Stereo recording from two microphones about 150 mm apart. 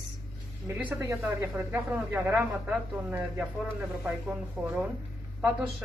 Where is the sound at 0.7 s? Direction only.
10° right (ahead or behind).